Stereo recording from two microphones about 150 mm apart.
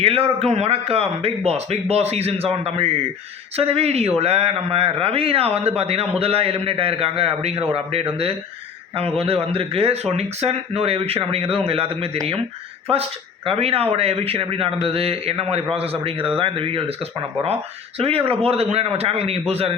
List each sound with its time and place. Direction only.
0.0 s a man's voice: 40° right (ahead or behind)